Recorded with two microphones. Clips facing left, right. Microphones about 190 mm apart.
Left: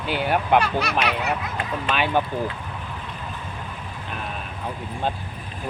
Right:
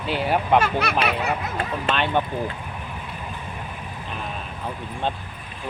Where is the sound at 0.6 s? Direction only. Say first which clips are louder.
Right 1 dB; 60° right (ahead or behind).